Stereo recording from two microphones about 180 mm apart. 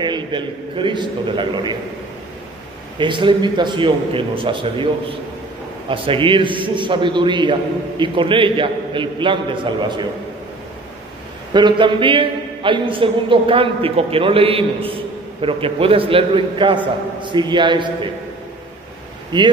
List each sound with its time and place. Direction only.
0.0 s a man's voice: 25° right (ahead or behind)
3.0 s a man's voice: 25° right (ahead or behind)
5.9 s a man's voice: 30° right (ahead or behind)
11.5 s a man's voice: 25° right (ahead or behind)
19.3 s a man's voice: 25° right (ahead or behind)